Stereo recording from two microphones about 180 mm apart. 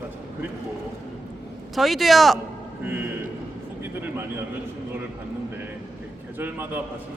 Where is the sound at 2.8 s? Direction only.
10° right (ahead or behind).